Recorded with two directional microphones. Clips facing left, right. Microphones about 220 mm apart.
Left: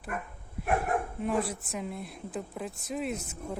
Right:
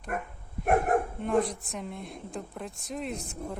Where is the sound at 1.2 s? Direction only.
5° left (ahead or behind).